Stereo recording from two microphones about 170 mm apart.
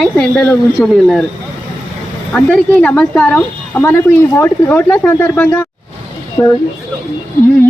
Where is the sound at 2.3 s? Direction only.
5° left (ahead or behind).